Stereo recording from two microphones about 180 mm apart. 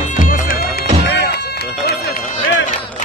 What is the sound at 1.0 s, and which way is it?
Cat, 70° left (ahead or behind).